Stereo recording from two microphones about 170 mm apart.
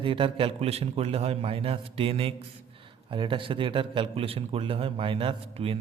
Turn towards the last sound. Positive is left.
turn(degrees=-35)  # may be behind; listen again after turning